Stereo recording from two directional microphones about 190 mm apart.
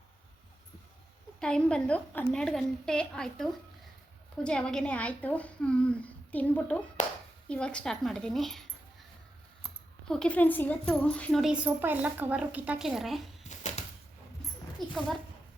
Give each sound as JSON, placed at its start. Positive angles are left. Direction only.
{"t": 1.4, "sound": "a woman's voice", "side_deg": 5}
{"t": 9.6, "sound": "a woman's voice", "side_deg": 5}
{"t": 13.5, "sound": "typewriter", "side_deg": 35}